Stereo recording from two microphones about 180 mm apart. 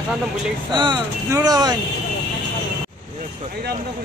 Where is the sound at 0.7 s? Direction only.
25° right (ahead or behind).